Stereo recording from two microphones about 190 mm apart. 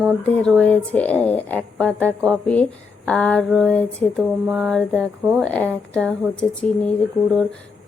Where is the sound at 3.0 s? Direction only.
5° left (ahead or behind).